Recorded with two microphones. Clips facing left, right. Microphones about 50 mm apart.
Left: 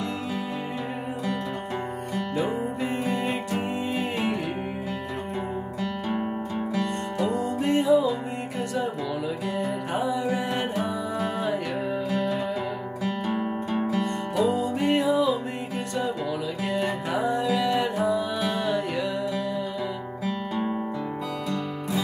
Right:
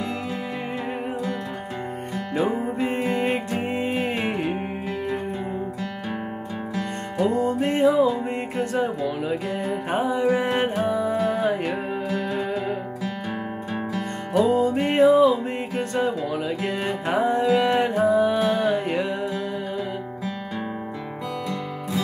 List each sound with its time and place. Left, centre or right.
2.3 s music: right
7.2 s music: right
9.9 s music: right
14.3 s music: right
16.6 s music: right